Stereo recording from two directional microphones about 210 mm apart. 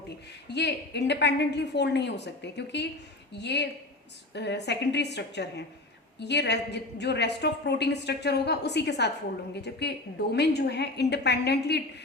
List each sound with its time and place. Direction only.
0.4 s a woman's voice: 55° left (ahead or behind)